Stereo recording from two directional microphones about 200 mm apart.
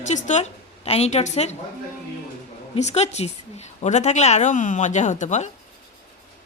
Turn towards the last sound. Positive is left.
turn(degrees=35)  # may be behind; listen again after turning